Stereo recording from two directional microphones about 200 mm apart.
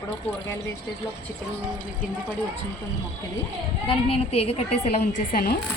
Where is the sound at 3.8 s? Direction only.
30° left (ahead or behind); by 5.6 s 45° left (ahead or behind).